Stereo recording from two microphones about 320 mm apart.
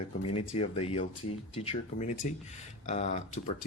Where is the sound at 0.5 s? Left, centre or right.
Centre.